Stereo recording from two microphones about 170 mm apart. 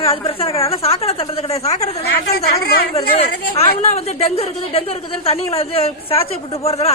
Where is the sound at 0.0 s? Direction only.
35° left (ahead or behind).